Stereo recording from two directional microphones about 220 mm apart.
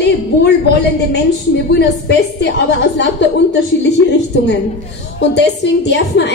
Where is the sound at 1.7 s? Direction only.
50° left (ahead or behind).